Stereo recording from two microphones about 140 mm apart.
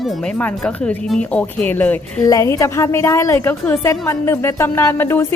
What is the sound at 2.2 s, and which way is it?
Speech, 25° left (ahead or behind).